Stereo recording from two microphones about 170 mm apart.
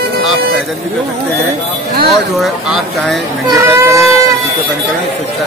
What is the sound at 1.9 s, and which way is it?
Speech, 65° right (ahead or behind).